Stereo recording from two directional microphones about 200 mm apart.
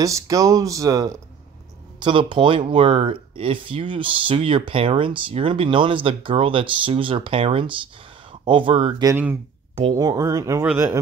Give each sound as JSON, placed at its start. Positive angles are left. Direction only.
{"t": 0.0, "sound": "speech", "side_deg": -15}
{"t": 9.1, "sound": "speech", "side_deg": -10}